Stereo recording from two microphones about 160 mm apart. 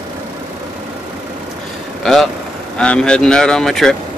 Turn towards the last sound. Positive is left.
turn(degrees=5)  # may be behind; listen again after turning